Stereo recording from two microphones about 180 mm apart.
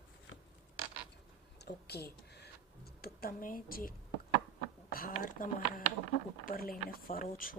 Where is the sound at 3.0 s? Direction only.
55° left (ahead or behind).